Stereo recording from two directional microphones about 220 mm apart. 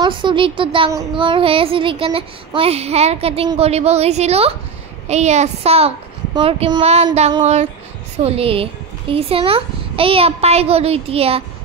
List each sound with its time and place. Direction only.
0.0 s speech: 20° right (ahead or behind)